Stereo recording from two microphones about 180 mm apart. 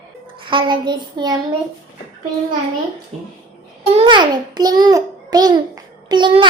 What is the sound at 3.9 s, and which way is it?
A child's voice, 30° right (ahead or behind).